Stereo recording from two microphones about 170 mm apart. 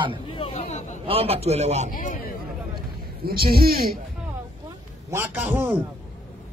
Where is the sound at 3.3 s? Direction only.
65° right (ahead or behind).